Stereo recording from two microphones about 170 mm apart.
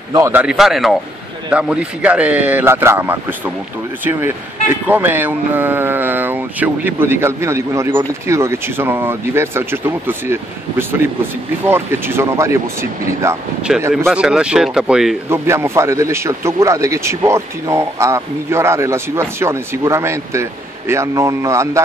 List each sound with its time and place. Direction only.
0.1 s speech: 15° right (ahead or behind)
13.7 s speech: 5° right (ahead or behind)
15.2 s speech: 15° right (ahead or behind)